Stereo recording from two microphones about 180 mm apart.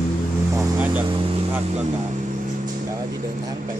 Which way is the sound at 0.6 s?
10° right (ahead or behind).